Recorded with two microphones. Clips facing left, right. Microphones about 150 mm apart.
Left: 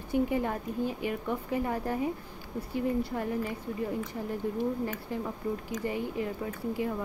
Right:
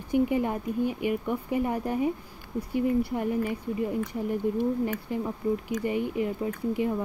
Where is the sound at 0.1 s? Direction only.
15° right (ahead or behind).